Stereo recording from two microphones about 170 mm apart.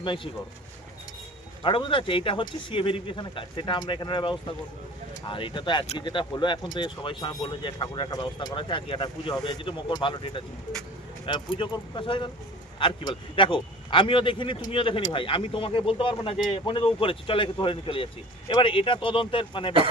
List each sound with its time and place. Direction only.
0.0 s speech: 30° left (ahead or behind)
1.6 s speech: 30° left (ahead or behind)